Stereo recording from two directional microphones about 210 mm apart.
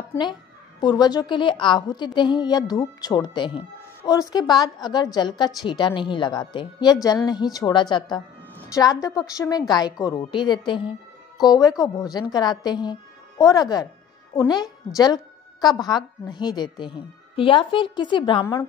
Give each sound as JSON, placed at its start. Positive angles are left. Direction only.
{"t": 0.1, "sound": "a woman's voice", "side_deg": 20}
{"t": 15.6, "sound": "a woman's voice", "side_deg": 20}